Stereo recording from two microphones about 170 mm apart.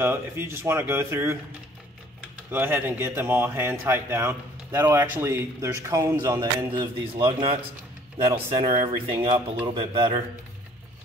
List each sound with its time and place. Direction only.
0.0 s speech: 15° right (ahead or behind)
2.5 s speech: 10° right (ahead or behind)
6.7 s a man's voice: 30° right (ahead or behind)